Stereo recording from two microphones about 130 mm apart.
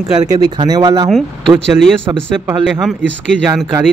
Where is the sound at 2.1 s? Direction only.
20° right (ahead or behind).